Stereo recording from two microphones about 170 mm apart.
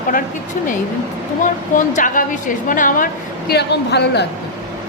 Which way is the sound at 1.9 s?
50° left (ahead or behind).